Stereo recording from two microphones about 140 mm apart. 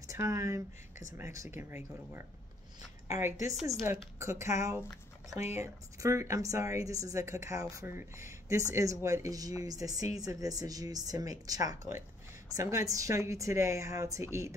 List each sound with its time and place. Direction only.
0.0 s speech: 20° right (ahead or behind)